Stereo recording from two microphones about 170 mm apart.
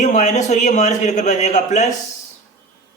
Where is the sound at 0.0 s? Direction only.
45° left (ahead or behind).